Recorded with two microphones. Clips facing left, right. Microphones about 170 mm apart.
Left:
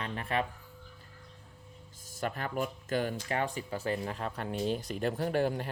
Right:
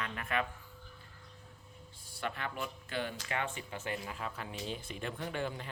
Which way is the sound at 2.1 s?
40° left (ahead or behind).